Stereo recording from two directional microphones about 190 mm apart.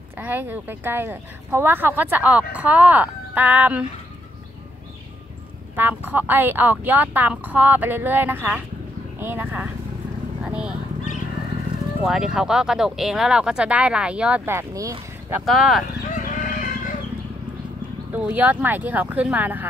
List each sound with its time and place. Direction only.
0.2 s speech: 10° right (ahead or behind)
5.8 s speech: 10° right (ahead or behind)
10.4 s a sound: 5° right (ahead or behind)
12.0 s speech: 5° right (ahead or behind)
15.4 s speech: centre (ahead or behind)
16.3 s chicken: 45° left (ahead or behind)
18.1 s speech: 10° right (ahead or behind)